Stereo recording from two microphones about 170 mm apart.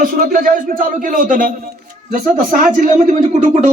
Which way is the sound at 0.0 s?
55° right (ahead or behind).